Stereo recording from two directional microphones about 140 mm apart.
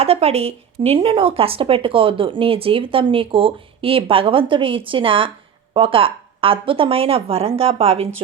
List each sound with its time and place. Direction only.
0.0 s a woman's voice: 45° right (ahead or behind)